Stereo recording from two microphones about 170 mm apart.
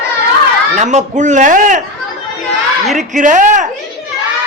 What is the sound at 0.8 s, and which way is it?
A man's voice, 45° right (ahead or behind).